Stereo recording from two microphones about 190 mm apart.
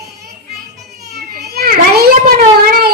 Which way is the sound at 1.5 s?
55° right (ahead or behind).